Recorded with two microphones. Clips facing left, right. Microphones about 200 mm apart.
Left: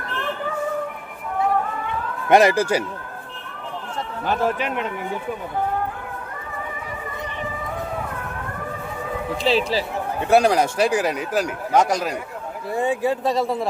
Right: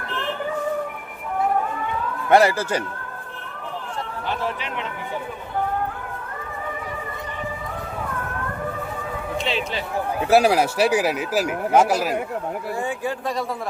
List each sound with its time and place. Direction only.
2.3 s speech: 15° left (ahead or behind)
4.3 s speech: 45° left (ahead or behind)
9.4 s speech: 35° left (ahead or behind)
10.2 s speech: 5° right (ahead or behind)
12.7 s speech: 20° left (ahead or behind)